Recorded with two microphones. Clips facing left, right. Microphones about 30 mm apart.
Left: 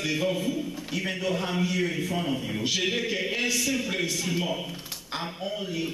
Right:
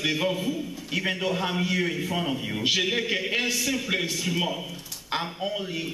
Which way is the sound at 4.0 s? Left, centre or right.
Centre.